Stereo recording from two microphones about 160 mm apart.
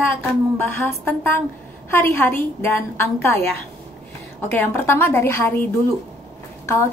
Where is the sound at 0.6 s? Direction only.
10° left (ahead or behind).